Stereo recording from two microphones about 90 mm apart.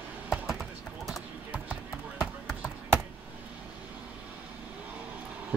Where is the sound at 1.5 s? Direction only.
15° right (ahead or behind).